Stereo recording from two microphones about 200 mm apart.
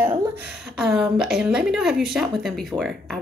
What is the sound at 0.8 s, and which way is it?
A woman's voice, centre (ahead or behind).